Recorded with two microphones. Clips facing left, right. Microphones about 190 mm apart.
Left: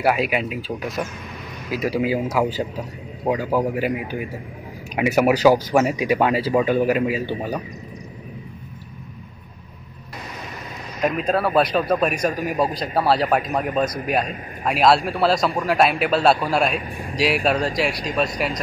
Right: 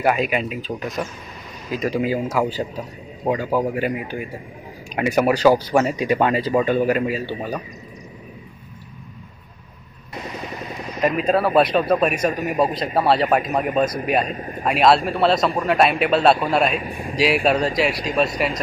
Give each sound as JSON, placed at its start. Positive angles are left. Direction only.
{"t": 0.0, "sound": "a man's voice", "side_deg": 5}
{"t": 11.0, "sound": "a man's voice", "side_deg": -5}